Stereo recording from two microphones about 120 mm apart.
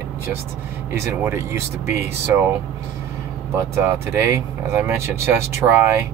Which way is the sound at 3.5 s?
25° right (ahead or behind).